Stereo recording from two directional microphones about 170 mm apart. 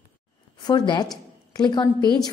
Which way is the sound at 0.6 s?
25° left (ahead or behind).